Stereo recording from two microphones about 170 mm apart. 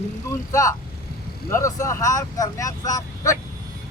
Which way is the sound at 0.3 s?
20° left (ahead or behind).